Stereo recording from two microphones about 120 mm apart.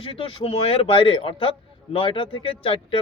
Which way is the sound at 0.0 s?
50° left (ahead or behind).